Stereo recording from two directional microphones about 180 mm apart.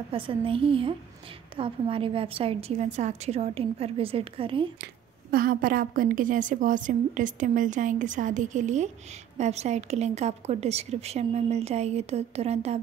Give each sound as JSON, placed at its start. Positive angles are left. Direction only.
{"t": 0.1, "sound": "a woman's voice", "side_deg": -30}
{"t": 5.3, "sound": "a woman's voice", "side_deg": -55}